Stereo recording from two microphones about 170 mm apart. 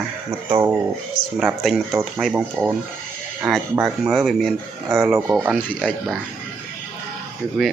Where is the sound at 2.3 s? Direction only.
10° right (ahead or behind).